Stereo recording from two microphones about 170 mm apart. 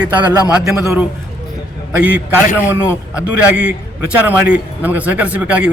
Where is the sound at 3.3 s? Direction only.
5° right (ahead or behind).